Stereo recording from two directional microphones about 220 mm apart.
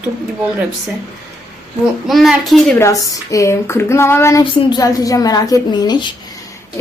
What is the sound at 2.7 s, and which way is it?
Speech, 15° left (ahead or behind).